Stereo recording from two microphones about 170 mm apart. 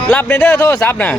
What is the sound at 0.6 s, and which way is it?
Speech, 15° left (ahead or behind).